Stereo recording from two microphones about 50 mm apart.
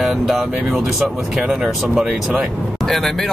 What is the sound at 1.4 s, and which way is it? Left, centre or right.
Speech, centre.